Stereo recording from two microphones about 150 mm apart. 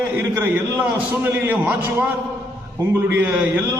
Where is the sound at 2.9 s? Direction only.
10° right (ahead or behind).